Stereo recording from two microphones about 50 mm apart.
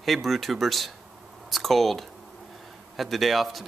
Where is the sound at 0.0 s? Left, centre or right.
Centre.